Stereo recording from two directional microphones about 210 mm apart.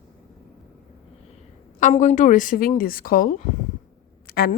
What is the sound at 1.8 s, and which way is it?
A woman's voice, 35° left (ahead or behind).